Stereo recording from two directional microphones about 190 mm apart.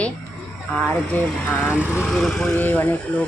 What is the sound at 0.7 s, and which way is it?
Speech, 5° left (ahead or behind).